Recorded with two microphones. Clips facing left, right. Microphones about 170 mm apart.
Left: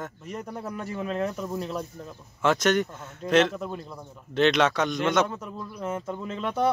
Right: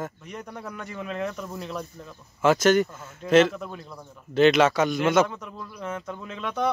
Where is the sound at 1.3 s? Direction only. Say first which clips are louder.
Left 3 dB; 5° left (ahead or behind).